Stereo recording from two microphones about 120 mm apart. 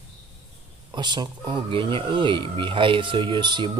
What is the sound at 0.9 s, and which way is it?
Speech, 40° right (ahead or behind).